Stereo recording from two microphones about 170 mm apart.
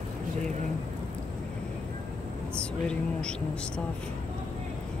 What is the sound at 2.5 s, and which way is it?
Speech, 5° left (ahead or behind).